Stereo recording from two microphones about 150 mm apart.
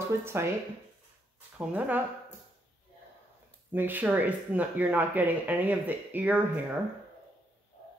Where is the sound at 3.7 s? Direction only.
10° right (ahead or behind).